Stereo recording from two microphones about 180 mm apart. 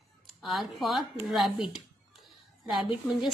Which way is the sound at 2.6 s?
Centre (ahead or behind).